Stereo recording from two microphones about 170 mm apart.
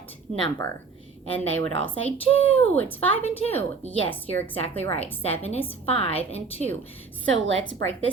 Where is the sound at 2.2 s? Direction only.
35° left (ahead or behind).